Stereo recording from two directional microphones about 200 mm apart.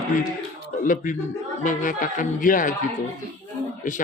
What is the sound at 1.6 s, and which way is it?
A man's voice, 40° left (ahead or behind).